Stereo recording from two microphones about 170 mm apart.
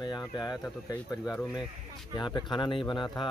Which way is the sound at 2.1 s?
25° left (ahead or behind).